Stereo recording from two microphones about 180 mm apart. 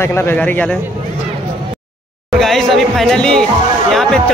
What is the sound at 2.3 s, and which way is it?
Speech, centre (ahead or behind).